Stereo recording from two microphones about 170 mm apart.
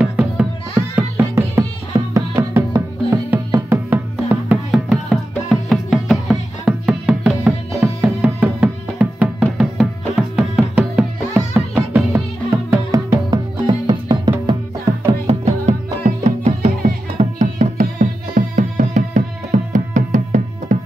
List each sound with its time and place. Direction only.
0.0 s music: 5° right (ahead or behind); by 20.7 s 50° right (ahead or behind)